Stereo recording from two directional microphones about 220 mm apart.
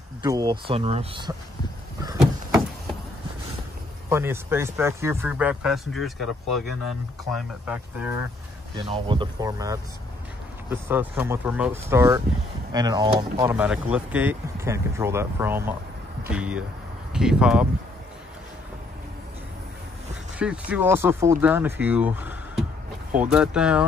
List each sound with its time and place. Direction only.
0.2 s speech: 20° right (ahead or behind)
4.1 s speech: 10° right (ahead or behind)
8.7 s speech: 25° right (ahead or behind); by 17.6 s 5° right (ahead or behind)
20.3 s speech: 5° right (ahead or behind)